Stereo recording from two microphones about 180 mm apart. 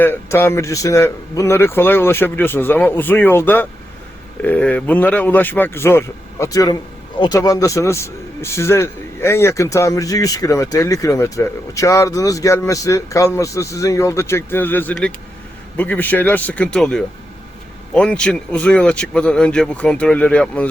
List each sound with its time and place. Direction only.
0.0 s a man's voice: 10° left (ahead or behind)